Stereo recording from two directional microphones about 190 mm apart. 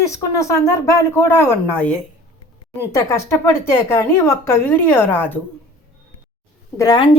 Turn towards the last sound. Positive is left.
turn(degrees=25)  # may be behind; listen again after turning